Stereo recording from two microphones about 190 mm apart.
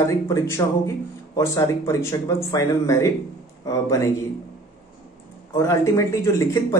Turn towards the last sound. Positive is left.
turn(degrees=15)  # may be behind; listen again after turning